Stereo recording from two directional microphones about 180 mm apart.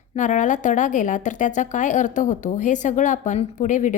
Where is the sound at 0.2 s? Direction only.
45° left (ahead or behind).